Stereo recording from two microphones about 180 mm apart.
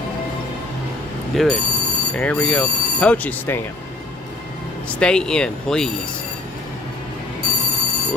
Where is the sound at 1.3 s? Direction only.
Centre (ahead or behind).